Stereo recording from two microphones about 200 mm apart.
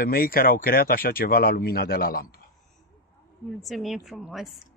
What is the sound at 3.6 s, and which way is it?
Speech, centre (ahead or behind).